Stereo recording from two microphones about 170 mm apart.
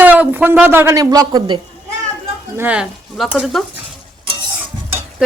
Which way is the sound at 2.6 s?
5° right (ahead or behind).